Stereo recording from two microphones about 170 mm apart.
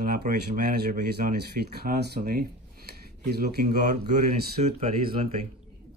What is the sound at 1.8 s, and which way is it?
Speech, 70° right (ahead or behind).